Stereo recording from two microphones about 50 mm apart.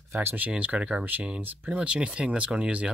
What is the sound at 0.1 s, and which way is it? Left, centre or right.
Speech, right.